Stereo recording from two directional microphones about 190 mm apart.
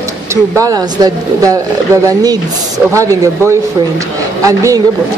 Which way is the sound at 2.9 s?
15° right (ahead or behind).